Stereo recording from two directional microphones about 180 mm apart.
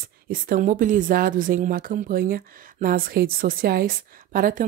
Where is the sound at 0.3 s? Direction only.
50° right (ahead or behind).